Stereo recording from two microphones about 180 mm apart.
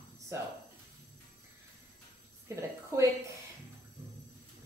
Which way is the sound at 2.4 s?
15° right (ahead or behind).